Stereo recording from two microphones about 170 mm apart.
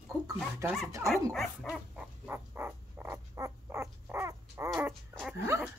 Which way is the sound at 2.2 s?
10° right (ahead or behind).